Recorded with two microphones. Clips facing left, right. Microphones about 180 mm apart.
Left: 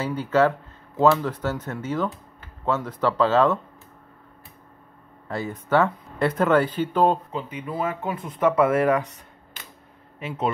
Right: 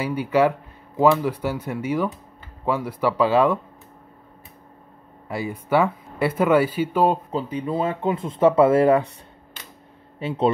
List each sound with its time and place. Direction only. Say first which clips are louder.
0.0 s speech: right 1 dB; 10° right (ahead or behind)
5.3 s speech: right 1 dB; 10° right (ahead or behind)
7.3 s speech: right 5 dB; 35° right (ahead or behind)
10.1 s speech: right 5 dB; 30° right (ahead or behind)